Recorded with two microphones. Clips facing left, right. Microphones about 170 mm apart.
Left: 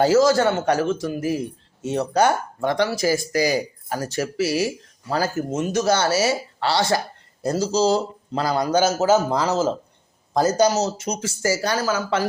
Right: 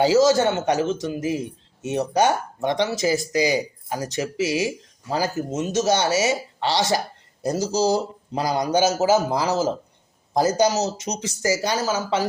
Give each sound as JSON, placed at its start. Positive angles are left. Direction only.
{"t": 0.0, "sound": "a man's voice", "side_deg": -15}